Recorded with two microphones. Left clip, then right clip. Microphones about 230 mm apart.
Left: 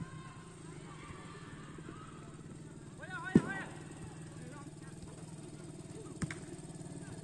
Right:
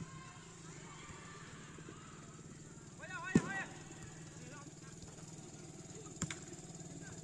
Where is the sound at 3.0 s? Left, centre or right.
Right.